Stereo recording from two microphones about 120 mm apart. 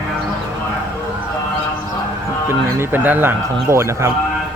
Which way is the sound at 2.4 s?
20° right (ahead or behind).